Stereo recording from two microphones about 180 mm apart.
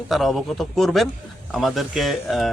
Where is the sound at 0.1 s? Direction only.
Centre (ahead or behind).